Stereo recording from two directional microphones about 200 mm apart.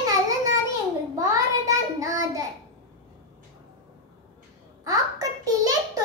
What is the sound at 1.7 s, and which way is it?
Child singing, 15° right (ahead or behind).